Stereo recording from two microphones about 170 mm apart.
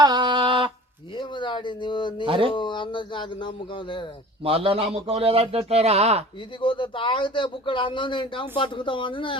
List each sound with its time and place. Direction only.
0.0 s a sound: 25° right (ahead or behind)
1.1 s a sound: 30° left (ahead or behind)
2.2 s speech: 30° right (ahead or behind)
2.5 s a man's voice: 30° left (ahead or behind)
4.4 s speech: 35° right (ahead or behind)
6.6 s a man's voice: 30° left (ahead or behind)